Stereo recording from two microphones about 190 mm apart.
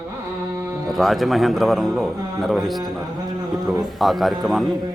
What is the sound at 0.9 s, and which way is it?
A man's voice, centre (ahead or behind).